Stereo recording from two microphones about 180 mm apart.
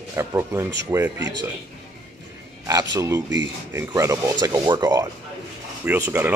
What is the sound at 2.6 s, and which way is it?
Speech, 20° right (ahead or behind).